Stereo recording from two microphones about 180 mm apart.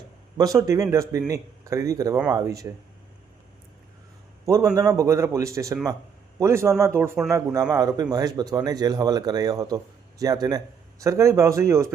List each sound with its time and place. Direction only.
0.3 s a man's voice: 20° right (ahead or behind)
4.4 s a man's voice: 15° right (ahead or behind)